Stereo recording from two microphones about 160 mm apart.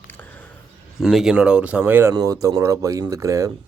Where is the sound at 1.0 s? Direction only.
Centre (ahead or behind).